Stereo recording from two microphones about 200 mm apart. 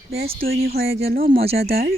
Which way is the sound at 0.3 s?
50° right (ahead or behind).